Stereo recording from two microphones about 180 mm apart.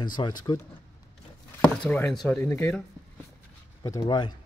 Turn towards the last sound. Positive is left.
turn(degrees=25)  # may be behind; listen again after turning